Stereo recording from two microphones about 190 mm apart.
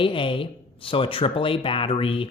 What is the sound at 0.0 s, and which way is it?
Speech, 25° left (ahead or behind).